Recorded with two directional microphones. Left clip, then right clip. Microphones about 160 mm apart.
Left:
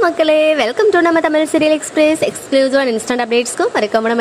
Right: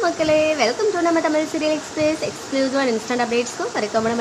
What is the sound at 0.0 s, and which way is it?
A woman's voice, 50° left (ahead or behind).